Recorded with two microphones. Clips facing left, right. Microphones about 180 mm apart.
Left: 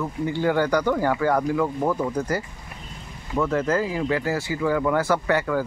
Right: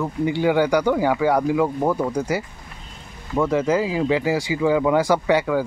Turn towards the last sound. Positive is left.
turn(degrees=-15)  # may be behind; listen again after turning